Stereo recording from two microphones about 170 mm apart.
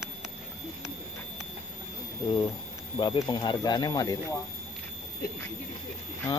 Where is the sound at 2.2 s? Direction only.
25° left (ahead or behind).